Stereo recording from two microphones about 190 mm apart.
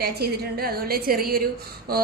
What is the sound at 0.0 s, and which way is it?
A woman's voice, 55° right (ahead or behind).